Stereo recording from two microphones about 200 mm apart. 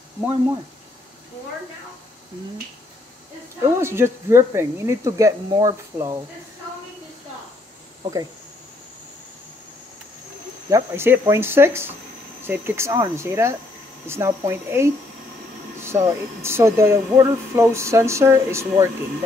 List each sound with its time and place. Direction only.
3.8 s speech: 10° right (ahead or behind)
8.0 s speech: 20° right (ahead or behind)
10.7 s speech: 10° right (ahead or behind)